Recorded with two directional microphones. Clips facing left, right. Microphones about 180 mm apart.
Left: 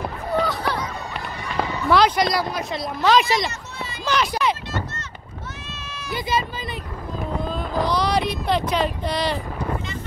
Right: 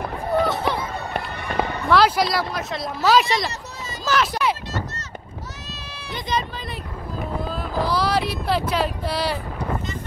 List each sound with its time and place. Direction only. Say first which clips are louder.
0.5 s music: right 2 dB; 25° right (ahead or behind)
1.1 s fireworks: right 3 dB; 60° right (ahead or behind)
1.9 s speech: even; 5° right (ahead or behind)
6.1 s speech: left 2 dB; 5° left (ahead or behind)